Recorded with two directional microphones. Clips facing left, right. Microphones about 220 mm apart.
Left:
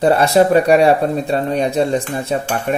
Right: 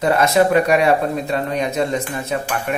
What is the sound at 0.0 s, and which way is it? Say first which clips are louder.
Speech: left 3 dB; 35° left (ahead or behind).